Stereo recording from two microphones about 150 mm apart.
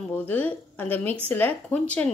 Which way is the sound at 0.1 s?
10° left (ahead or behind).